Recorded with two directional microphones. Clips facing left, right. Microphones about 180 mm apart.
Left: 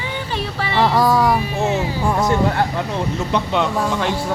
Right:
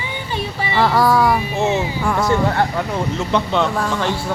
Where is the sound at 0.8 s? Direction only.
15° left (ahead or behind).